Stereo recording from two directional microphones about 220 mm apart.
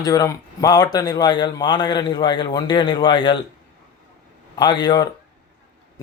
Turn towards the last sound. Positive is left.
turn(degrees=20)  # may be behind; listen again after turning